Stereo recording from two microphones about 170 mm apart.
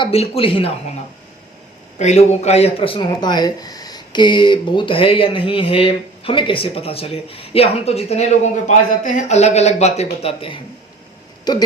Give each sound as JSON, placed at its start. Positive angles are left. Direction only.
{"t": 0.0, "sound": "speech", "side_deg": 35}
{"t": 2.0, "sound": "speech", "side_deg": 40}